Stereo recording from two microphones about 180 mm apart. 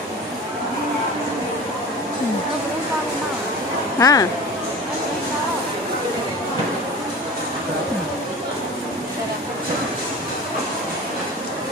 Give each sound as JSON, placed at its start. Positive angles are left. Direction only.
{"t": 4.0, "sound": "speech", "side_deg": 20}